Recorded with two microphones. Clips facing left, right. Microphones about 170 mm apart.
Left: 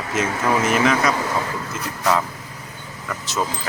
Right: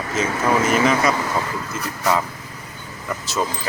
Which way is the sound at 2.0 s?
5° right (ahead or behind).